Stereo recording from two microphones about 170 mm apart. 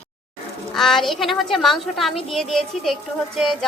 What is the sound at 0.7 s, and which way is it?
A woman's voice, centre (ahead or behind).